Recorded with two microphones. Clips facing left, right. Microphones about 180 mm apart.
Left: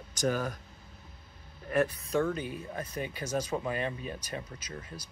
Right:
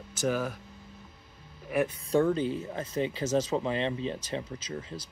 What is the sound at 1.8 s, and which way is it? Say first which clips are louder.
Speech: right 6 dB; 30° right (ahead or behind).